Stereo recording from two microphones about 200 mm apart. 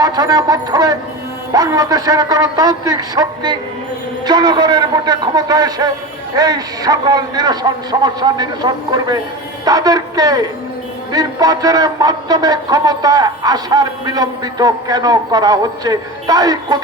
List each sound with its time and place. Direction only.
0.0 s a man's voice: 20° right (ahead or behind)